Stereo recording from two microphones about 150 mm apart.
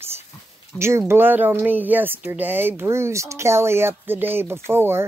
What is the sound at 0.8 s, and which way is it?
Speech, 15° right (ahead or behind).